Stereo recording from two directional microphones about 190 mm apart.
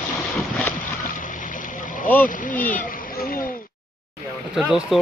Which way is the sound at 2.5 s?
10° left (ahead or behind).